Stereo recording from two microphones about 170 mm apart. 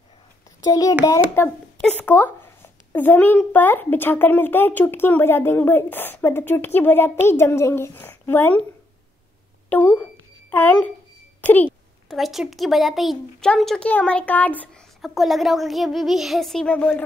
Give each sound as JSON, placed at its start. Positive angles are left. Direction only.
{"t": 0.7, "sound": "a child's voice", "side_deg": 20}
{"t": 9.7, "sound": "speech", "side_deg": 10}
{"t": 11.4, "sound": "a sound", "side_deg": 10}
{"t": 12.2, "sound": "speech", "side_deg": 0}